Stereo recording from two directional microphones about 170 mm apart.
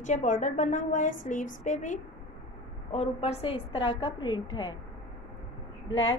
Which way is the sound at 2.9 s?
35° left (ahead or behind).